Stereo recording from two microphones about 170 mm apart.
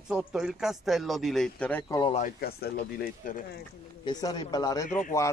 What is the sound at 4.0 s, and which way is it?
Speech, 25° left (ahead or behind).